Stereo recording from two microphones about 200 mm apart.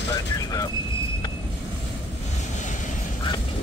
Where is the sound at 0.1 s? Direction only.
20° left (ahead or behind).